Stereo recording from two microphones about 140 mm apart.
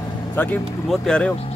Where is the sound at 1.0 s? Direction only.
5° left (ahead or behind).